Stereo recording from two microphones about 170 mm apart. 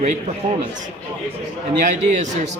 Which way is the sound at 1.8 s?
45° right (ahead or behind).